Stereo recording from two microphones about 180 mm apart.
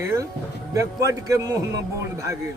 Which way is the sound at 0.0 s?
15° right (ahead or behind).